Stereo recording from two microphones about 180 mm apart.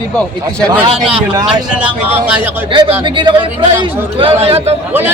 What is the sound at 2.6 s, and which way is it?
A man's voice, 30° right (ahead or behind).